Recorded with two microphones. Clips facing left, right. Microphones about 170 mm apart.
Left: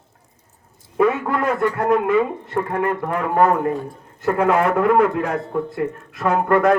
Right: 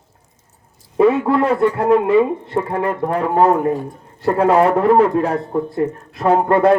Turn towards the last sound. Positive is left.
turn(degrees=-30)  # may be behind; listen again after turning